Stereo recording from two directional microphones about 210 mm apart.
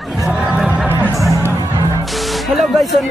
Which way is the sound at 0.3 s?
5° right (ahead or behind).